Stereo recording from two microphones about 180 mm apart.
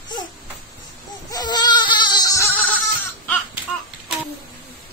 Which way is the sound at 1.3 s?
25° left (ahead or behind).